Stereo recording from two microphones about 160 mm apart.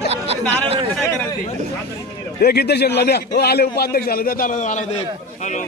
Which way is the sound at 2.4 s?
80° left.